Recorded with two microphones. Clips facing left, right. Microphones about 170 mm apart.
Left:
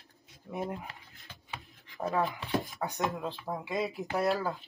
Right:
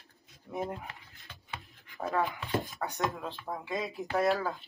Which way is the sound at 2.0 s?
Centre (ahead or behind).